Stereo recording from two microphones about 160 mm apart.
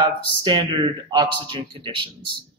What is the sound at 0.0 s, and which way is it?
Speech, 30° right (ahead or behind).